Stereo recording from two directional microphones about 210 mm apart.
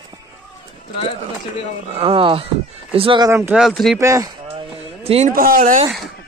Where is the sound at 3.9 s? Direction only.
15° right (ahead or behind).